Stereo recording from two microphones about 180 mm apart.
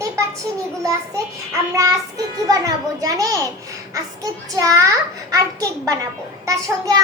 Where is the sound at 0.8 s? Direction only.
20° right (ahead or behind).